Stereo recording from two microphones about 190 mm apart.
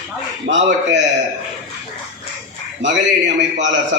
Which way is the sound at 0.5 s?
70° right (ahead or behind).